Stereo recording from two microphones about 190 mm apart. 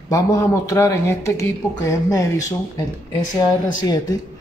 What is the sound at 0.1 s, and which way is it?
Speech, 15° left (ahead or behind).